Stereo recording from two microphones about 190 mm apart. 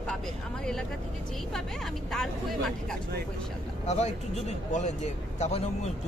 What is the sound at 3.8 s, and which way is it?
Speech, 35° left (ahead or behind).